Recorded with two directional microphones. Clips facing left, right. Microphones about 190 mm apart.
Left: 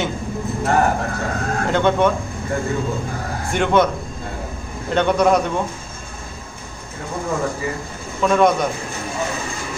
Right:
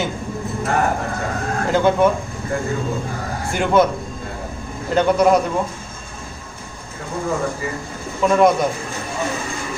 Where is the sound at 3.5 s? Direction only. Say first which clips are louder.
Right 1 dB; 5° right (ahead or behind).